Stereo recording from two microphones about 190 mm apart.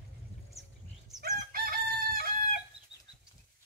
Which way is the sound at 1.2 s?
50° right (ahead or behind).